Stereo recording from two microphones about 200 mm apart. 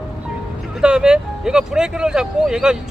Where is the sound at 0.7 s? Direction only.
5° right (ahead or behind).